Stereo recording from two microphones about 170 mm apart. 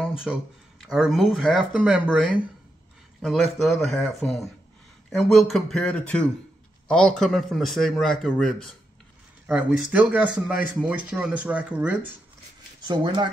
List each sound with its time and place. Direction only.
0.2 s speech: 5° right (ahead or behind)
12.8 s speech: 30° right (ahead or behind)